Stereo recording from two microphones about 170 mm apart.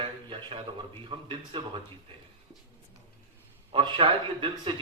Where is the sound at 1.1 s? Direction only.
30° right (ahead or behind).